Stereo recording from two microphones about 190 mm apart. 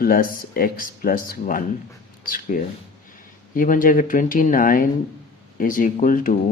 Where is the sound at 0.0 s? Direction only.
50° left (ahead or behind).